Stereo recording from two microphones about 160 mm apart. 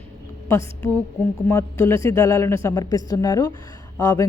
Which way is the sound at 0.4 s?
15° left (ahead or behind).